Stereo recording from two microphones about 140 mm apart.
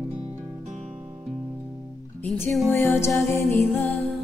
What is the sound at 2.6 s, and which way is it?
Music, 15° left (ahead or behind).